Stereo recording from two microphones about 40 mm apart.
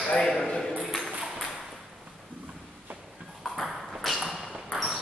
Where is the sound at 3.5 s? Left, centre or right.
Centre.